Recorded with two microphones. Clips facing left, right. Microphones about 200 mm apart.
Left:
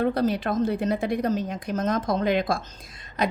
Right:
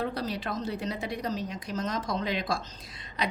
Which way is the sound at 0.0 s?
55° left (ahead or behind).